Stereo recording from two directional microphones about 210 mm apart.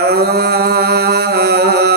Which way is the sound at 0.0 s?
50° right (ahead or behind).